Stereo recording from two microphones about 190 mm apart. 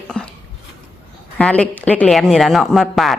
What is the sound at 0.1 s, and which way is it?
Speech, 5° left (ahead or behind).